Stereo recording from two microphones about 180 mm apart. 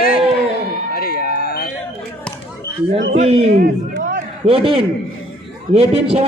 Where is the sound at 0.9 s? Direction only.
55° left (ahead or behind).